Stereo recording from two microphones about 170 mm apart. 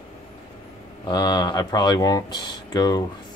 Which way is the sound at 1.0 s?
25° left (ahead or behind).